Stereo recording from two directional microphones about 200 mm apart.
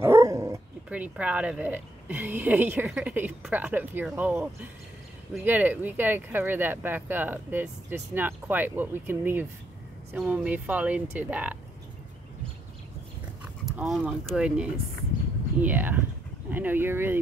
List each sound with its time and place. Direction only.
0.0 s speech: 15° right (ahead or behind)
13.4 s speech: 5° right (ahead or behind)